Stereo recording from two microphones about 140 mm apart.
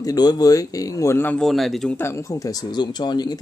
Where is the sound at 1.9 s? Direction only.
20° left (ahead or behind).